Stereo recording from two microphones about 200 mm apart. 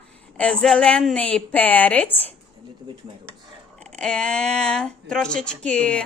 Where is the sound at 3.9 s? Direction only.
5° left (ahead or behind).